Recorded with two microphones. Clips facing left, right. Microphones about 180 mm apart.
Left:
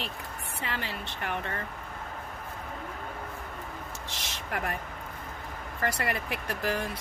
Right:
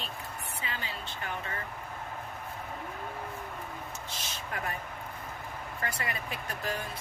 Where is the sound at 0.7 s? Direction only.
70° left (ahead or behind).